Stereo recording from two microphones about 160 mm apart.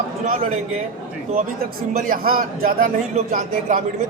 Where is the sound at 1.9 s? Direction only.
60° right (ahead or behind).